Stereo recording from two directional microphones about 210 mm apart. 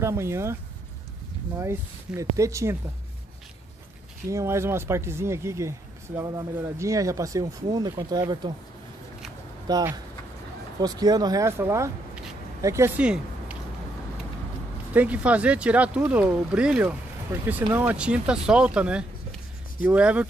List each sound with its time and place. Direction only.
0.0 s speech: 10° right (ahead or behind)
1.6 s speech: 10° right (ahead or behind)
4.3 s speech: 15° right (ahead or behind)
9.7 s speech: 20° right (ahead or behind)
15.0 s speech: 5° right (ahead or behind)